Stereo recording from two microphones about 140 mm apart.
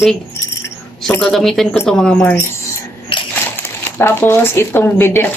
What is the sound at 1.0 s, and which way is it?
A woman's voice, 5° left (ahead or behind).